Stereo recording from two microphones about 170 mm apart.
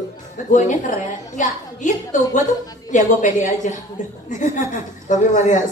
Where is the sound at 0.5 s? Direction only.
45° left (ahead or behind).